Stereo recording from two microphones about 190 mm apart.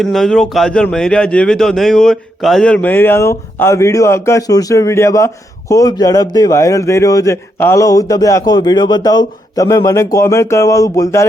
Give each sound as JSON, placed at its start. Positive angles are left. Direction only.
{"t": 0.0, "sound": "speech", "side_deg": 0}